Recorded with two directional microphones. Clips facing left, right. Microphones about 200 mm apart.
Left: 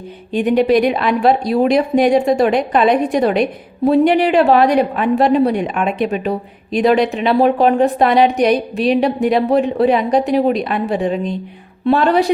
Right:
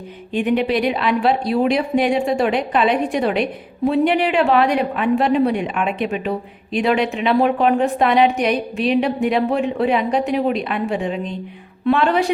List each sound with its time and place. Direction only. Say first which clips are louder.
0.3 s a woman's voice: left 5 dB; 40° left (ahead or behind)